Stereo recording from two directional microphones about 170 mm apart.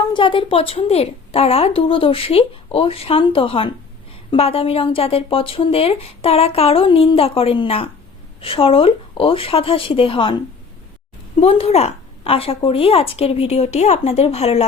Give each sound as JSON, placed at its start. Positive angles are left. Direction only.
{"t": 0.1, "sound": "a woman's voice", "side_deg": 30}
{"t": 11.3, "sound": "a woman's voice", "side_deg": 35}